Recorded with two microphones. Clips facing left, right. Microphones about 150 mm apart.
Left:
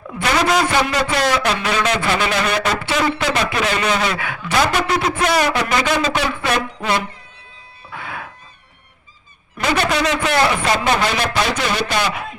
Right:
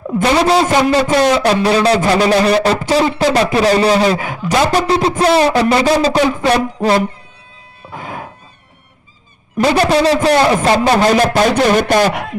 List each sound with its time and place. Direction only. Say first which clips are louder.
0.2 s a man's voice: right 5 dB; 30° right (ahead or behind)
0.9 s a man's voice: right 7 dB; 35° right (ahead or behind)
7.9 s music: right 4 dB; 40° right (ahead or behind)
9.6 s a man's voice: right 7 dB; 35° right (ahead or behind)